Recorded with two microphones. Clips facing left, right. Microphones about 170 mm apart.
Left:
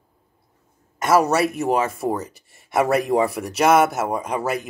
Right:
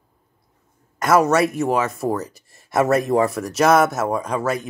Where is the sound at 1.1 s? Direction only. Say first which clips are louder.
Right 1 dB; 30° left (ahead or behind).